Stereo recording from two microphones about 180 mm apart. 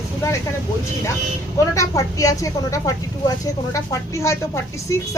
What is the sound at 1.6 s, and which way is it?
Speech, 15° left (ahead or behind).